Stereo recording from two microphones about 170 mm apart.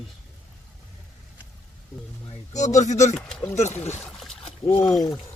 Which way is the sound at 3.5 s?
40° left (ahead or behind).